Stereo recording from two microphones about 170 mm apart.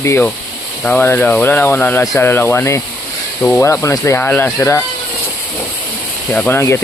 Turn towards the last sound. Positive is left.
turn(degrees=5)  # may be behind; listen again after turning